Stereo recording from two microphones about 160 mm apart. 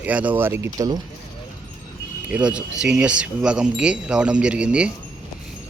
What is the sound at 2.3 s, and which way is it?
Speech, 5° right (ahead or behind).